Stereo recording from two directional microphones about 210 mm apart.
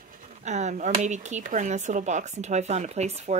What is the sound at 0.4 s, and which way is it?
Speech, 35° right (ahead or behind).